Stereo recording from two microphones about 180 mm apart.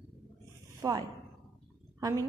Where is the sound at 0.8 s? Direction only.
20° right (ahead or behind).